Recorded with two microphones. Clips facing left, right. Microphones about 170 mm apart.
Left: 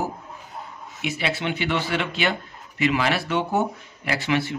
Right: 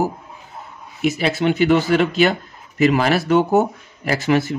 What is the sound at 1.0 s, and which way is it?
Speech, 40° right (ahead or behind).